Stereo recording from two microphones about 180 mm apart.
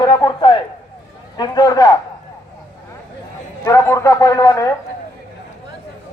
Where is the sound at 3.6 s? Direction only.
15° left (ahead or behind).